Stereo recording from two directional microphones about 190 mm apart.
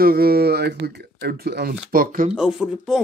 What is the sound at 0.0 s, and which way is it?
Speech, 55° right (ahead or behind).